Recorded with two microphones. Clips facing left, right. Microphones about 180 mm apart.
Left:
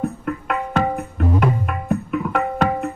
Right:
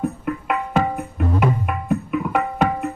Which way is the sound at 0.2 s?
5° right (ahead or behind).